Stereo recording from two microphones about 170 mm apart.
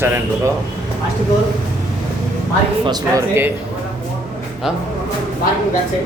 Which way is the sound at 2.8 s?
25° right (ahead or behind).